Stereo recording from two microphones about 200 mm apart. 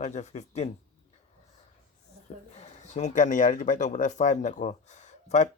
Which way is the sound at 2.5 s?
35° left (ahead or behind).